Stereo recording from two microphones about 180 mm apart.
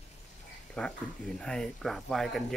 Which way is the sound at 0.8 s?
5° left (ahead or behind).